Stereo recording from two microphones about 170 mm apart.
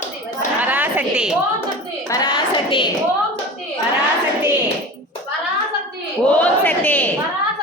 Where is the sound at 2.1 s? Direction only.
25° left (ahead or behind).